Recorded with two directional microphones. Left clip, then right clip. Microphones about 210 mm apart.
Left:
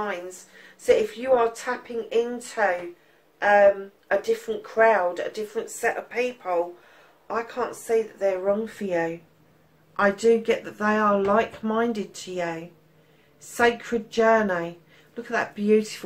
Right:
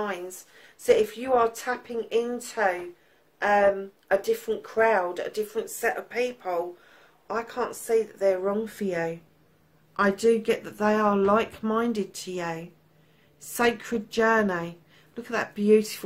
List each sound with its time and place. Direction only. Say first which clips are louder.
0.8 s speech: left 2 dB; 45° right (ahead or behind)
13.6 s speech: left 3 dB; 45° right (ahead or behind)